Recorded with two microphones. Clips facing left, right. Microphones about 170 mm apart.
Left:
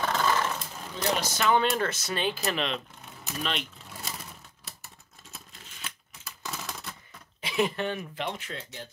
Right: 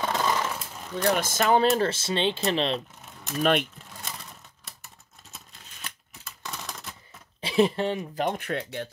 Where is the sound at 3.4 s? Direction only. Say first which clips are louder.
Right 10 dB; 55° right (ahead or behind).